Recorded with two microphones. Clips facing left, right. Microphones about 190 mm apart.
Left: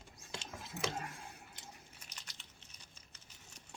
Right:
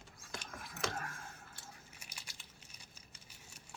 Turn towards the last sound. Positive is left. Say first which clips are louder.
# right 2 dB
turn(degrees=-10)  # may be behind; listen again after turning